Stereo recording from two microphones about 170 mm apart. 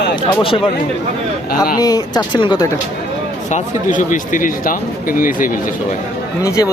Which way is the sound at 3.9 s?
50° left (ahead or behind).